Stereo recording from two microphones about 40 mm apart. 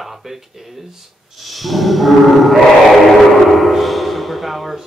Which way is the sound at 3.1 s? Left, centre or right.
Centre.